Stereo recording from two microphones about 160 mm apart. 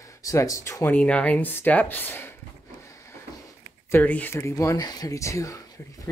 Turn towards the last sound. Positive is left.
turn(degrees=20)  # may be behind; listen again after turning